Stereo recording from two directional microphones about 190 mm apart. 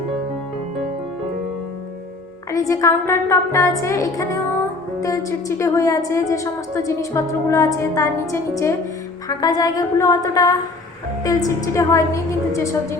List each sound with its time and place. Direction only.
2.5 s a woman's voice: 15° left (ahead or behind)